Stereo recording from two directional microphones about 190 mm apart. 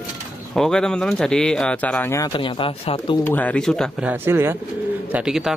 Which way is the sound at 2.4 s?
25° left (ahead or behind).